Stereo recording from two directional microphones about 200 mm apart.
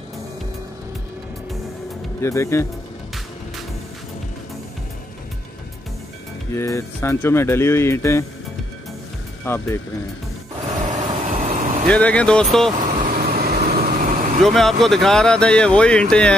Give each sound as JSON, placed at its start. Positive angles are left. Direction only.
{"t": 2.2, "sound": "speech", "side_deg": 15}
{"t": 6.5, "sound": "speech", "side_deg": 15}
{"t": 9.4, "sound": "speech", "side_deg": 10}
{"t": 11.2, "sound": "vehicle", "side_deg": -35}
{"t": 11.9, "sound": "speech", "side_deg": 5}
{"t": 12.7, "sound": "vehicle", "side_deg": -40}
{"t": 14.4, "sound": "speech", "side_deg": 0}